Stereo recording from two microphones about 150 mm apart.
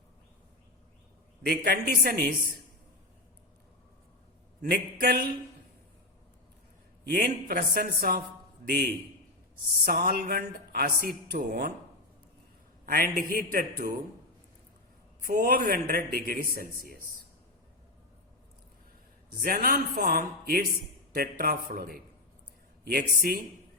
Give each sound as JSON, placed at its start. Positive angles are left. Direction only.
{"t": 1.5, "sound": "a woman's voice", "side_deg": -90}
{"t": 4.7, "sound": "a woman's voice", "side_deg": -85}
{"t": 7.0, "sound": "a woman's voice", "side_deg": -85}
{"t": 9.6, "sound": "a woman's voice", "side_deg": -80}
{"t": 12.8, "sound": "speech", "side_deg": -70}
{"t": 15.3, "sound": "speech", "side_deg": -80}
{"t": 19.4, "sound": "speech", "side_deg": -70}
{"t": 22.8, "sound": "a woman's voice", "side_deg": -90}